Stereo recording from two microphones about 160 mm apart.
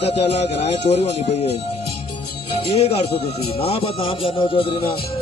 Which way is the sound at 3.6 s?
40° left (ahead or behind).